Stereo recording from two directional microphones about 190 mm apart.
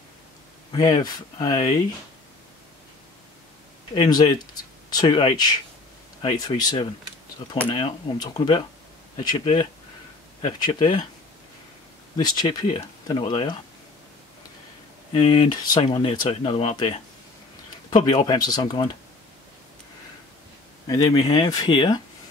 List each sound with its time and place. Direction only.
0.7 s speech: 20° left (ahead or behind)
3.9 s speech: 25° left (ahead or behind)
12.2 s speech: 25° left (ahead or behind)
15.1 s speech: 25° left (ahead or behind)
18.0 s speech: 25° left (ahead or behind)
20.8 s speech: 20° left (ahead or behind)